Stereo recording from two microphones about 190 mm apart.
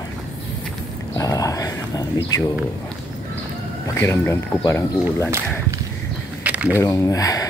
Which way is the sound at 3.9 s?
10° left (ahead or behind).